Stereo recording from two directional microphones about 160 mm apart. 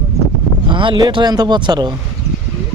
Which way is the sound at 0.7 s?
30° right (ahead or behind).